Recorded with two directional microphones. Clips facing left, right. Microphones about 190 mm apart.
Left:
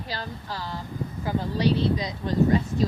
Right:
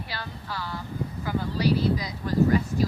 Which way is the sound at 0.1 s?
40° left (ahead or behind).